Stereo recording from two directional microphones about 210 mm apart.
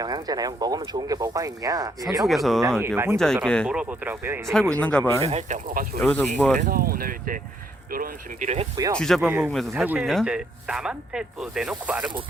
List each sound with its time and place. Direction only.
0.0 s speech: 20° right (ahead or behind)
2.2 s speech: centre (ahead or behind)
2.8 s speech: 10° right (ahead or behind)
3.4 s speech: 5° left (ahead or behind)
4.8 s speech: 5° left (ahead or behind)
5.2 s speech: 30° right (ahead or behind)
6.0 s speech: 5° left (ahead or behind)
6.6 s speech: 45° right (ahead or behind)
8.7 s speech: 15° right (ahead or behind)
9.0 s speech: centre (ahead or behind)
9.2 s speech: 10° right (ahead or behind)
9.5 s speech: centre (ahead or behind)